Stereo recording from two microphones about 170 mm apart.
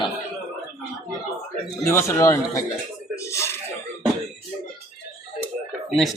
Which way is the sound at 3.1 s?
15° left (ahead or behind).